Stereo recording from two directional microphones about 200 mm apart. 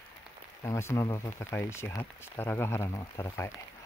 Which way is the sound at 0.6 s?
15° left (ahead or behind).